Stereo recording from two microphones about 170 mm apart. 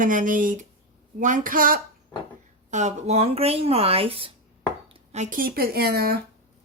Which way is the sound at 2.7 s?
40° right (ahead or behind).